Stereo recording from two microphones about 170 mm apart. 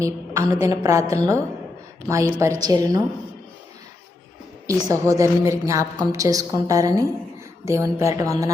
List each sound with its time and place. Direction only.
0.0 s a woman's voice: 20° right (ahead or behind)
4.6 s a woman's voice: 20° right (ahead or behind)